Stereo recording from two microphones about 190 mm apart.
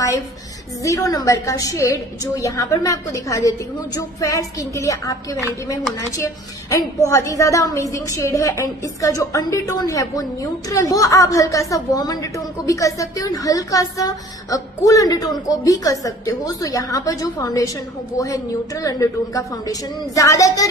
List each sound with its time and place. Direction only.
0.8 s a woman's voice: 15° left (ahead or behind)